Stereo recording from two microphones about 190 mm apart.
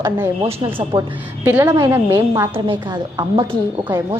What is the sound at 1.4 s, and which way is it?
A woman's voice, 10° right (ahead or behind).